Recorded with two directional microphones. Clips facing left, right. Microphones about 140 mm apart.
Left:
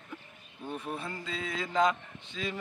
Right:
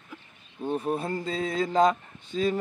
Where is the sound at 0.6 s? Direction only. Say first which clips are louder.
Right 9 dB; 35° right (ahead or behind).